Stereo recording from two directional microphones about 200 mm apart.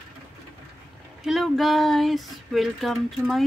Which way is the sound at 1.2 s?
Centre (ahead or behind).